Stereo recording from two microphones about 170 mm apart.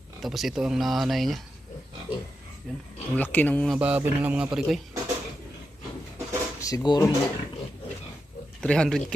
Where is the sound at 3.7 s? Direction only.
10° right (ahead or behind).